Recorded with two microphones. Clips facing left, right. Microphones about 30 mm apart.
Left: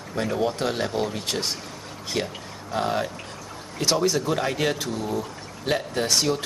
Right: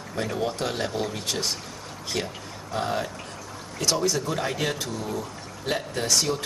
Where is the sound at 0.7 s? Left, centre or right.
Centre.